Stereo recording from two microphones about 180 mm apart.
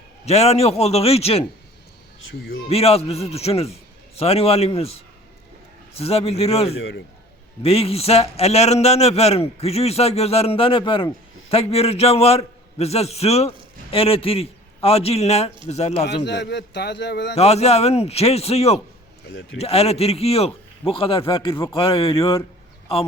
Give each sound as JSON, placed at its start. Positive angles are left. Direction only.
{"t": 0.3, "sound": "a man's voice", "side_deg": 35}
{"t": 2.3, "sound": "speech", "side_deg": 60}
{"t": 2.6, "sound": "a man's voice", "side_deg": 35}
{"t": 6.7, "sound": "speech", "side_deg": 90}
{"t": 7.6, "sound": "a man's voice", "side_deg": 35}
{"t": 16.2, "sound": "a man's voice", "side_deg": 70}
{"t": 17.3, "sound": "a man's voice", "side_deg": 35}
{"t": 19.3, "sound": "speech", "side_deg": 90}
{"t": 19.5, "sound": "a man's voice", "side_deg": 35}